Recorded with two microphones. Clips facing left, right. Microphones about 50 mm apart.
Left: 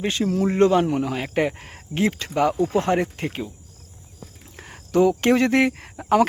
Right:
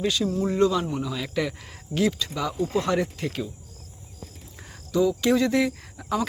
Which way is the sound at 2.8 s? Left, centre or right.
Left.